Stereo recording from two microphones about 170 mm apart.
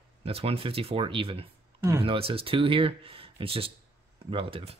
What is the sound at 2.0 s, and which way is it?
Speech, 35° right (ahead or behind).